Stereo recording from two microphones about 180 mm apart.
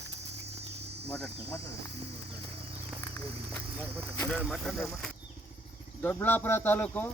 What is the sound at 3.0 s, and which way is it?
Speech, 10° left (ahead or behind).